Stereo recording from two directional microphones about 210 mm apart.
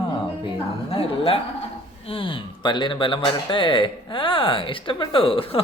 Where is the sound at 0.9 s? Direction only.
25° left (ahead or behind).